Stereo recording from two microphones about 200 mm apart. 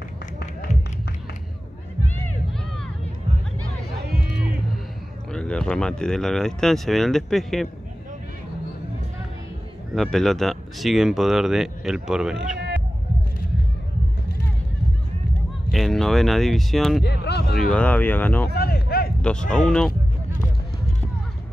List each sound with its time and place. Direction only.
5.3 s speech: 5° left (ahead or behind)
9.9 s speech: centre (ahead or behind)
15.7 s speech: centre (ahead or behind)
17.0 s speech: 55° left (ahead or behind)
17.6 s speech: 5° left (ahead or behind)
18.5 s a sound: 50° left (ahead or behind)
19.2 s speech: 5° left (ahead or behind)